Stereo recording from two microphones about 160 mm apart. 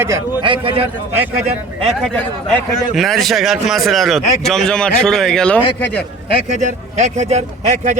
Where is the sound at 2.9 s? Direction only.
Centre (ahead or behind).